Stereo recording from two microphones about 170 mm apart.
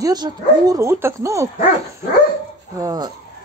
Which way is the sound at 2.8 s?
25° right (ahead or behind).